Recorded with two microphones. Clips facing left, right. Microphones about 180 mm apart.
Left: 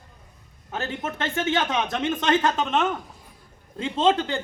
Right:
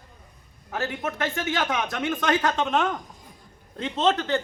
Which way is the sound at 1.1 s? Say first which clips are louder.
Left 4 dB; 25° left (ahead or behind).